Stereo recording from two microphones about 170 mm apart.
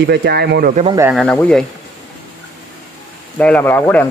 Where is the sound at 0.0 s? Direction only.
75° right (ahead or behind).